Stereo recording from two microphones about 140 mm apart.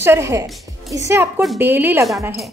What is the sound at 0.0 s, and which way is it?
A woman's voice, 20° right (ahead or behind).